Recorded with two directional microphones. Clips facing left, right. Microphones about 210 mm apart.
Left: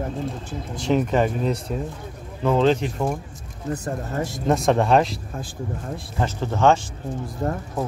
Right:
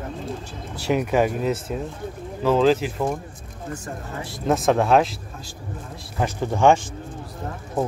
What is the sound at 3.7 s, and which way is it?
Speech, 40° left (ahead or behind).